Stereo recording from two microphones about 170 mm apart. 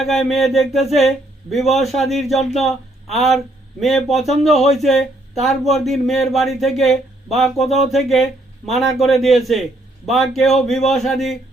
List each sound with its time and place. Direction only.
0.0 s speech: centre (ahead or behind)